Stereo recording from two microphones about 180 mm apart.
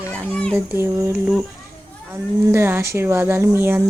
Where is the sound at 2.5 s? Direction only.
10° right (ahead or behind).